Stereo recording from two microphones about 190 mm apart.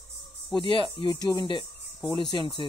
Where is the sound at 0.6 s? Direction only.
25° left (ahead or behind).